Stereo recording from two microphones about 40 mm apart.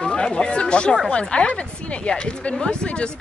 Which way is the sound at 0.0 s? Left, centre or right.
Left.